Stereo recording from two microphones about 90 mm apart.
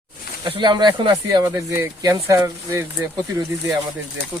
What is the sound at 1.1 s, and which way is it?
Speech, 40° right (ahead or behind).